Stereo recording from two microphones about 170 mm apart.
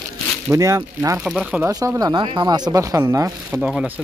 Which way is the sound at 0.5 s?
20° right (ahead or behind).